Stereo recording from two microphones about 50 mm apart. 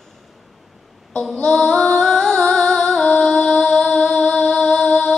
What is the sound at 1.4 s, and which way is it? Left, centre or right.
Female singing, centre.